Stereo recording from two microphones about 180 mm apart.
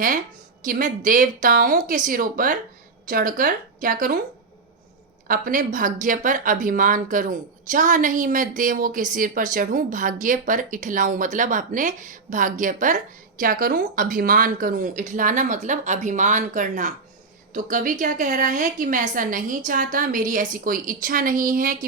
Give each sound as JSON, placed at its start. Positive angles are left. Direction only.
{"t": 0.6, "sound": "speech", "side_deg": -45}
{"t": 5.3, "sound": "speech", "side_deg": -45}